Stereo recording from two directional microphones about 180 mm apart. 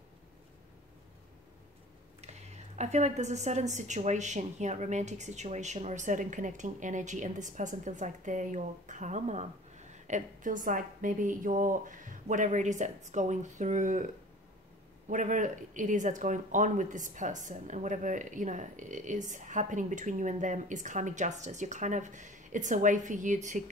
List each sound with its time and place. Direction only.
2.2 s a woman's voice: 40° right (ahead or behind)